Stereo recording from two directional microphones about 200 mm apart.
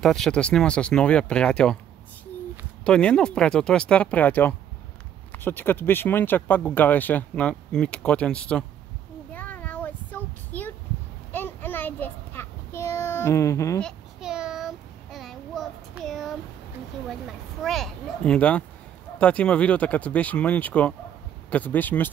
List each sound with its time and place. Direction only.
0.0 s speech: centre (ahead or behind)
2.8 s speech: 5° left (ahead or behind)
9.3 s child singing: 10° left (ahead or behind)
13.8 s child singing: 5° right (ahead or behind)
17.1 s speech: centre (ahead or behind)